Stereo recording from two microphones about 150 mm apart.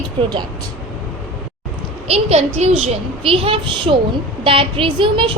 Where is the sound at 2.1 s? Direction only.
45° right (ahead or behind).